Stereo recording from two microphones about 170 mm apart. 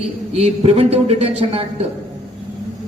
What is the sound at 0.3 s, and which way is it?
A man's voice, 35° right (ahead or behind).